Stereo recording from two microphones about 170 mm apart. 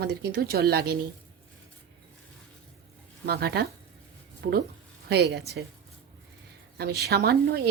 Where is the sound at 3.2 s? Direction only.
65° right (ahead or behind).